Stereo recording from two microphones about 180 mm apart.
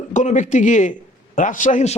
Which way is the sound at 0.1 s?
40° left (ahead or behind).